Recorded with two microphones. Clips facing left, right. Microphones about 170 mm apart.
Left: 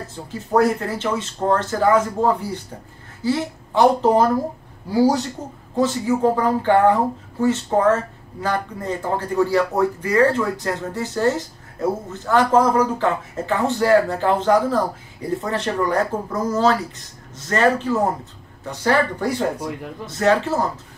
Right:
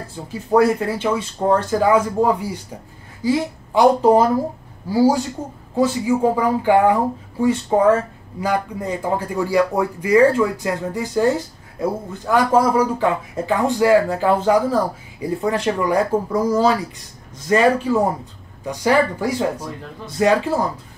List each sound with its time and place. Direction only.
0.3 s speech: 10° right (ahead or behind)
5.8 s speech: 10° right (ahead or behind)